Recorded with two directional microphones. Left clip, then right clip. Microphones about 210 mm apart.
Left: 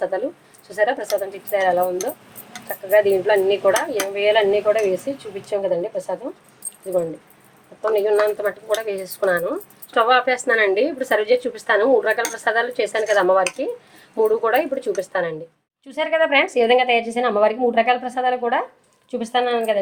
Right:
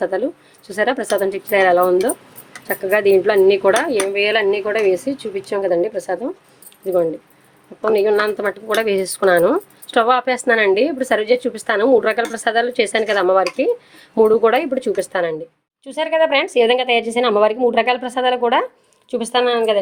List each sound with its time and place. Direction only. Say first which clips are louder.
0.7 s a woman's voice: right 2 dB; 45° right (ahead or behind)
7.8 s a woman's voice: right 2 dB; 45° right (ahead or behind)